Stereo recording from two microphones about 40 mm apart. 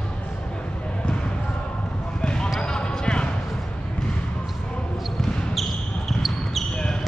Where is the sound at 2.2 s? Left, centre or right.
Left.